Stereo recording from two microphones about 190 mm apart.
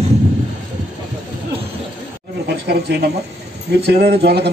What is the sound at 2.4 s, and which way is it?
Speech, 60° right (ahead or behind).